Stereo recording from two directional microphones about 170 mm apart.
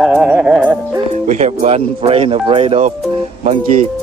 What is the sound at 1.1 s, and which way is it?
Speech, 45° right (ahead or behind).